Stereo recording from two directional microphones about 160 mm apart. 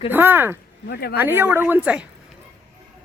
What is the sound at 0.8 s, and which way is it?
Speech, 75° left (ahead or behind).